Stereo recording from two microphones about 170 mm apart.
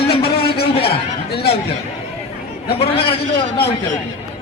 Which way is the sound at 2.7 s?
35° left (ahead or behind).